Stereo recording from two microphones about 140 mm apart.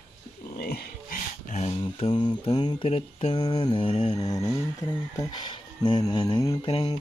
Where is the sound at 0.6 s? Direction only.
90° left.